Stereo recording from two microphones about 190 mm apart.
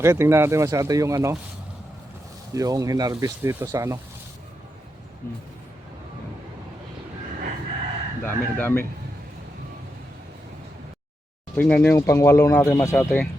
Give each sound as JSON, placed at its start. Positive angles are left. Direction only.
{"t": 0.0, "sound": "speech", "side_deg": -15}
{"t": 2.6, "sound": "speech", "side_deg": -20}
{"t": 8.2, "sound": "speech", "side_deg": 10}
{"t": 11.5, "sound": "speech", "side_deg": 10}